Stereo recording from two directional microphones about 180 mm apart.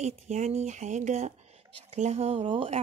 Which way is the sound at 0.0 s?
40° right (ahead or behind).